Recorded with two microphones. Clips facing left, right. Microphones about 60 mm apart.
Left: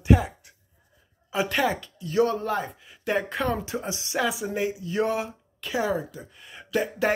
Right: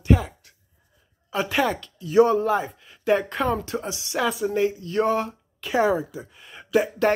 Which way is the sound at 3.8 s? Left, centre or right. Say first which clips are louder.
Right 1 dB; left.